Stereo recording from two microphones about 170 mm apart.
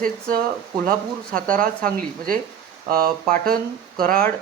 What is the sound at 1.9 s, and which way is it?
A man's voice, 55° right (ahead or behind).